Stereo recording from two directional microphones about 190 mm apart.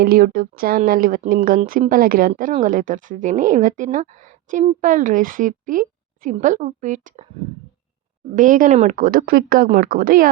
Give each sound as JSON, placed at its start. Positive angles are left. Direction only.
{"t": 0.0, "sound": "speech", "side_deg": -50}
{"t": 8.4, "sound": "speech", "side_deg": -45}